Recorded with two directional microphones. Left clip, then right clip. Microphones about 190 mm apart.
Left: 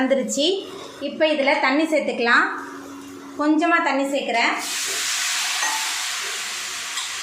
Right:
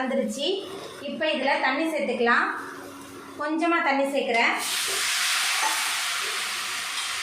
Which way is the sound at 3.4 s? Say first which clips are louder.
Left 8 dB; 50° left (ahead or behind).